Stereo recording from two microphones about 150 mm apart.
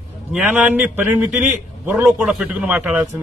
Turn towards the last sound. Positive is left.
turn(degrees=-5)  # may be behind; listen again after turning